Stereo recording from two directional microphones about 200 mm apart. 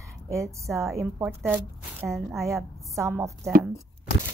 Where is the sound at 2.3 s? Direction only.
15° right (ahead or behind).